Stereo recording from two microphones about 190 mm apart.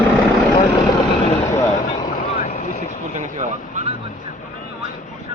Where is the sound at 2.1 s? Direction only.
40° left (ahead or behind).